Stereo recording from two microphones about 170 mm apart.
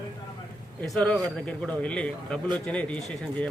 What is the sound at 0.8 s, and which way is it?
Speech, 5° left (ahead or behind).